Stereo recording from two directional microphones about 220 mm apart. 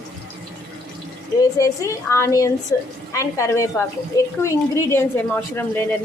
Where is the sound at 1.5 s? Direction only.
15° left (ahead or behind).